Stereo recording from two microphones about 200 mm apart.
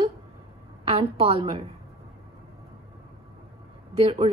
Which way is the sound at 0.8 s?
30° right (ahead or behind).